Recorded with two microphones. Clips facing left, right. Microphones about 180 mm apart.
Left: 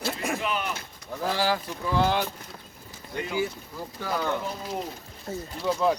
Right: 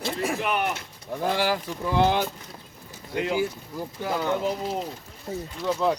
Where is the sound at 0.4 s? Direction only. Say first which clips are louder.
Right 4 dB; 60° right (ahead or behind).